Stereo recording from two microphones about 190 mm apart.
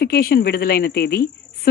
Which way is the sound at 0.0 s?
55° left (ahead or behind).